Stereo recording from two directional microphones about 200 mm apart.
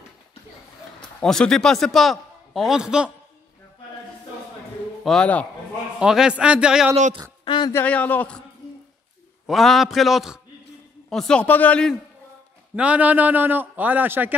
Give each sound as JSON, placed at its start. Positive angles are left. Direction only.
{"t": 1.2, "sound": "a man's voice", "side_deg": 5}
{"t": 5.0, "sound": "a man's voice", "side_deg": 5}
{"t": 7.4, "sound": "a sound", "side_deg": 25}
{"t": 7.7, "sound": "a man's voice", "side_deg": 5}
{"t": 9.5, "sound": "a man's voice", "side_deg": 0}
{"t": 12.7, "sound": "a man's voice", "side_deg": -5}